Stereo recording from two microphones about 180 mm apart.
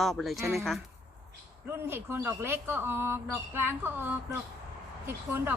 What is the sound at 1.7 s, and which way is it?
Speech, 10° right (ahead or behind).